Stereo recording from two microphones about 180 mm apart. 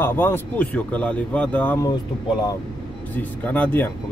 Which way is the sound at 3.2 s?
10° left (ahead or behind).